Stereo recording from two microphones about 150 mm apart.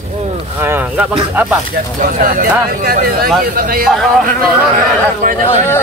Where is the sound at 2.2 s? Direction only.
80° right.